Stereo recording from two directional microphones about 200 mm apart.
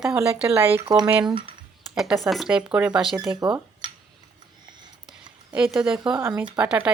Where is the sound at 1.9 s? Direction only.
Centre (ahead or behind).